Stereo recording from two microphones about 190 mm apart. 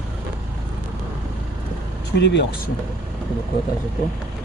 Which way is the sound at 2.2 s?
65° left (ahead or behind).